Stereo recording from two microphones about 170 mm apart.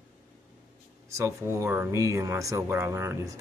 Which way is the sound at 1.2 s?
15° right (ahead or behind).